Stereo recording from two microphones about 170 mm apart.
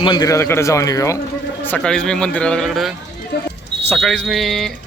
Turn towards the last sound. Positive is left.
turn(degrees=0)  # may be behind; listen again after turning